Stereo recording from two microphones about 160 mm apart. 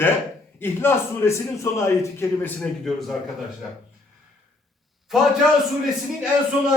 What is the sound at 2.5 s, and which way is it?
Speech, centre (ahead or behind).